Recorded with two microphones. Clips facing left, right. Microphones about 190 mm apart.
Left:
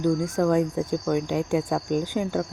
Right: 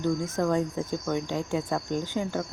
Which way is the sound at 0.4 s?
15° left (ahead or behind).